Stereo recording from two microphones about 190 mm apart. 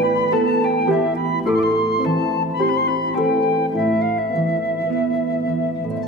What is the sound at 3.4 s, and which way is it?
Organ, 55° left (ahead or behind).